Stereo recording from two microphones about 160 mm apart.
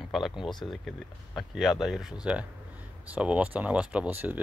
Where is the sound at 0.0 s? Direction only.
Centre (ahead or behind).